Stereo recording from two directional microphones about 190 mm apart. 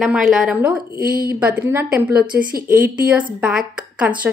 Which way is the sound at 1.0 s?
50° right (ahead or behind).